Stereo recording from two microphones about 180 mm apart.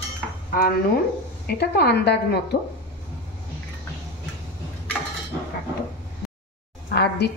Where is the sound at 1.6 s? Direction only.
65° left (ahead or behind).